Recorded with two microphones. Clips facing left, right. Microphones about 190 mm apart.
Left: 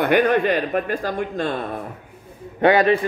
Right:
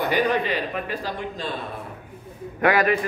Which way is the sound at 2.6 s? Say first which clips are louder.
Left 4 dB; 30° left (ahead or behind).